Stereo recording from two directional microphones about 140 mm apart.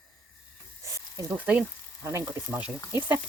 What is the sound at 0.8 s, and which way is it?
Snake, 20° right (ahead or behind).